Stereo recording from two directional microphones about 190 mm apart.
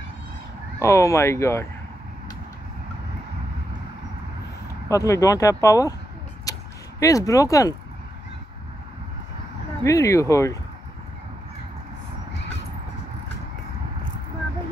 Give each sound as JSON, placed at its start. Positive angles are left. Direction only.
{"t": 0.7, "sound": "speech", "side_deg": 15}
{"t": 4.8, "sound": "speech", "side_deg": 15}
{"t": 6.5, "sound": "a sound", "side_deg": 20}
{"t": 7.0, "sound": "speech", "side_deg": 15}
{"t": 9.8, "sound": "speech", "side_deg": 15}